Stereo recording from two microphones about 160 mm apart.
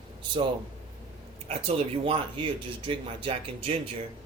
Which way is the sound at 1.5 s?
40° right (ahead or behind).